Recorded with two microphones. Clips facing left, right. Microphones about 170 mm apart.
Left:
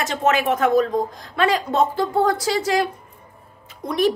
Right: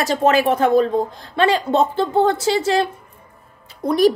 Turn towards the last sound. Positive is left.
turn(degrees=-35)  # may be behind; listen again after turning